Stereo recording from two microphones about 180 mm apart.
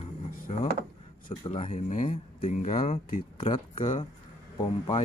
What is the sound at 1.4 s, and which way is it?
Speech, 35° left (ahead or behind).